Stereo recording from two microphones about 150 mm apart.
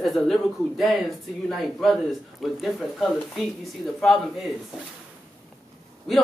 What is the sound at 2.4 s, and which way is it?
Speech, centre (ahead or behind).